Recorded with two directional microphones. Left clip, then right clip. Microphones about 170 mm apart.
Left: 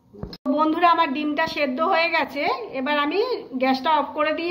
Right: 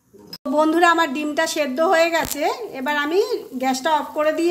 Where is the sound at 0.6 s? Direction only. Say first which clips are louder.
Right 3 dB; 65° right (ahead or behind).